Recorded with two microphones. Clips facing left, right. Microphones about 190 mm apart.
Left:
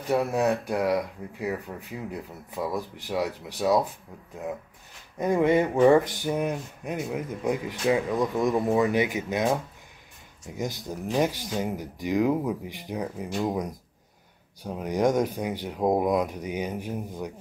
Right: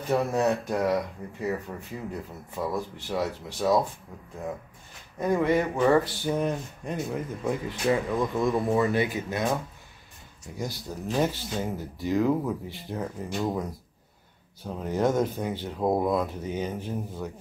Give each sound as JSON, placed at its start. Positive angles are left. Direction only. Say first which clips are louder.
{"t": 0.1, "sound": "speech", "louder": "left 1 dB", "side_deg": 10}
{"t": 5.2, "sound": "speech", "louder": "left 2 dB", "side_deg": 20}